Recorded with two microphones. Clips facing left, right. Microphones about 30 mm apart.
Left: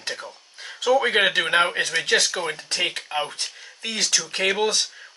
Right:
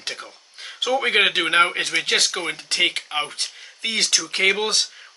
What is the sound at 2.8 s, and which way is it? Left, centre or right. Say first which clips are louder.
Speech: right 3 dB; right.